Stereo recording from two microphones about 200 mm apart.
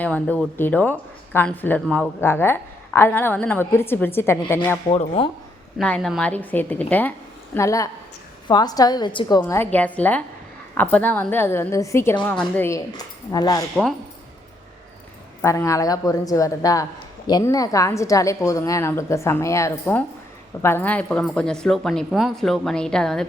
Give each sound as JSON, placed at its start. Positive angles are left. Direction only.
{"t": 0.0, "sound": "a woman's voice", "side_deg": 5}
{"t": 4.9, "sound": "a woman's voice", "side_deg": 25}
{"t": 5.8, "sound": "a woman's voice", "side_deg": 5}
{"t": 9.4, "sound": "a woman's voice", "side_deg": 10}
{"t": 15.4, "sound": "a woman's voice", "side_deg": 15}